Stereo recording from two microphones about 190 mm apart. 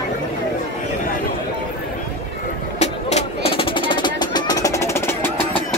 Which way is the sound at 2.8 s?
35° left (ahead or behind).